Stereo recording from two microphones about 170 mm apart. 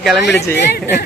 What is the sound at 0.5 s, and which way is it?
Speech, 75° left (ahead or behind).